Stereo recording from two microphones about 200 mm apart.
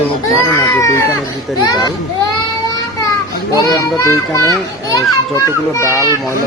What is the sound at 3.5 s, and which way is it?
A child's voice, 20° left (ahead or behind).